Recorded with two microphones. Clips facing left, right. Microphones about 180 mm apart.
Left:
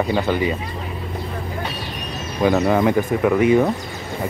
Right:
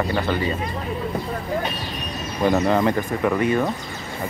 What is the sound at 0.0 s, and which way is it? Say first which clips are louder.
Speech: left 3 dB; 15° left (ahead or behind).